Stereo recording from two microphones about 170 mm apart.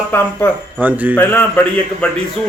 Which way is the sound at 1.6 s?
10° left (ahead or behind).